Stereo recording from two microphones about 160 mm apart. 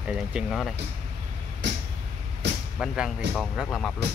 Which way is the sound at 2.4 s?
90° right.